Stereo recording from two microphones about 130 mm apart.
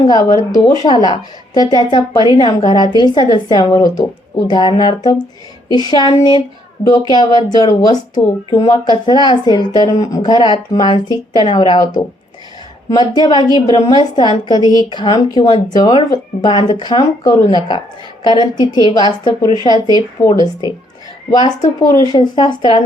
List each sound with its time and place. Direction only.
0.0 s a woman's voice: 30° left (ahead or behind)